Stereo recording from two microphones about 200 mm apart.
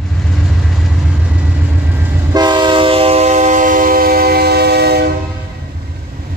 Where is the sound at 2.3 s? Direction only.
20° right (ahead or behind); by 5.1 s 55° right (ahead or behind).